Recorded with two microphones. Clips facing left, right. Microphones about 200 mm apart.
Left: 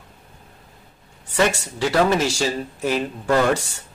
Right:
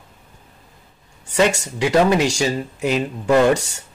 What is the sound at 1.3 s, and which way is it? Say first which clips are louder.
Speech: right 3 dB; 15° right (ahead or behind).